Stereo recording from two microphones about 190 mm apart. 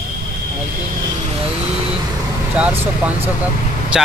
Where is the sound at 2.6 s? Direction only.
5° right (ahead or behind).